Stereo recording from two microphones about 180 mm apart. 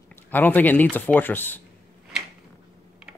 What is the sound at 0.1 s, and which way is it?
Speech, 10° left (ahead or behind).